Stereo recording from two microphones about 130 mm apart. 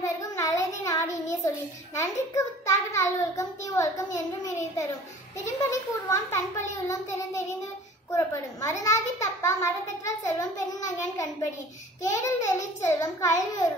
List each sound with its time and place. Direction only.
0.0 s a sound: 25° left (ahead or behind)
2.0 s a child's voice: 20° left (ahead or behind)
12.0 s a child's voice: 25° left (ahead or behind)